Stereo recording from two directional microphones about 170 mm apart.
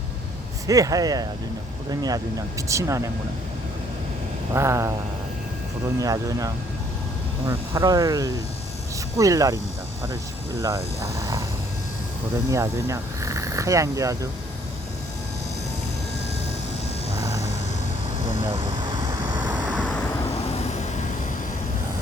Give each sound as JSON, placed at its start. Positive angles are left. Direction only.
{"t": 0.7, "sound": "speech", "side_deg": -20}
{"t": 4.5, "sound": "a sound", "side_deg": -15}
{"t": 6.0, "sound": "speech", "side_deg": -20}
{"t": 10.6, "sound": "speech", "side_deg": -20}
{"t": 12.5, "sound": "speech", "side_deg": -15}
{"t": 17.2, "sound": "vehicle", "side_deg": -20}
{"t": 19.3, "sound": "vehicle", "side_deg": -25}